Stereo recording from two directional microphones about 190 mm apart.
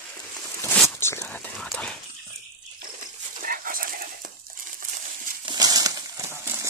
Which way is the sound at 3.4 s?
50° right (ahead or behind).